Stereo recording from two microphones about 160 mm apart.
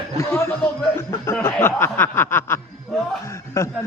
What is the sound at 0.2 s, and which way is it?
Speech, 15° left (ahead or behind).